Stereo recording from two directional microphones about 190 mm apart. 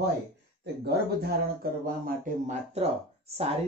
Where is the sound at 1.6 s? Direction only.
45° right (ahead or behind).